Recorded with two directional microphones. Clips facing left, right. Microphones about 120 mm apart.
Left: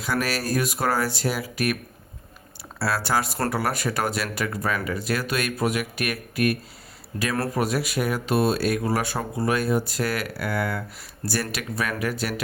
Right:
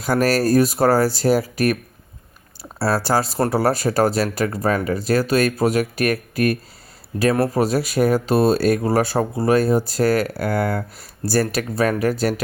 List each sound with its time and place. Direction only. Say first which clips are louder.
0.0 s speech: right 8 dB; 40° right (ahead or behind)
7.3 s speech: right 6 dB; 30° right (ahead or behind)